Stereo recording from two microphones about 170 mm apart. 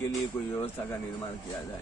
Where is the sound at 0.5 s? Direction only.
15° left (ahead or behind).